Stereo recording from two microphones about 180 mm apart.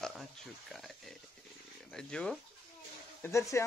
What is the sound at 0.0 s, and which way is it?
Speech, centre (ahead or behind).